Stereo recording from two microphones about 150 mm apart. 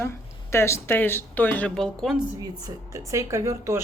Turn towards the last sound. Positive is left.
turn(degrees=-20)  # may be behind; listen again after turning